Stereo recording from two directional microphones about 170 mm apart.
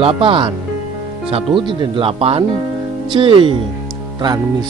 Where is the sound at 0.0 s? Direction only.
30° right (ahead or behind).